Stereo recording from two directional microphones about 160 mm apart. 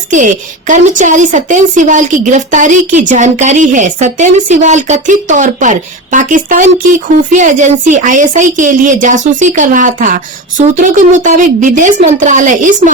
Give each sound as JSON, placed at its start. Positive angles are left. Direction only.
{"t": 0.1, "sound": "speech", "side_deg": -50}